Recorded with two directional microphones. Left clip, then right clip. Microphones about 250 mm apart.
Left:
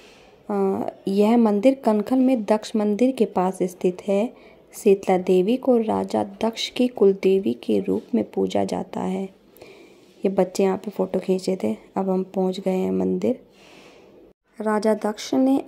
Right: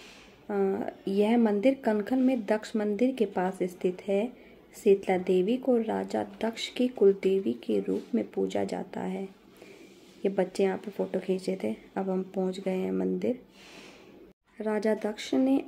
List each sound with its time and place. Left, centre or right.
0.5 s a woman's voice: left
14.6 s speech: centre